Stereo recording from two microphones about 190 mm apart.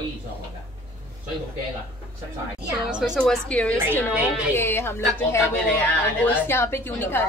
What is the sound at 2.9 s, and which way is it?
A woman's voice, centre (ahead or behind).